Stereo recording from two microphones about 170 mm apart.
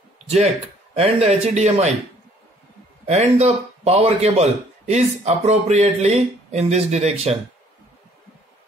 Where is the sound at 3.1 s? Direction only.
40° right (ahead or behind).